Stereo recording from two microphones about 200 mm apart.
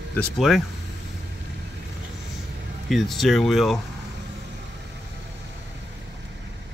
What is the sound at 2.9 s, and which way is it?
Speech, centre (ahead or behind).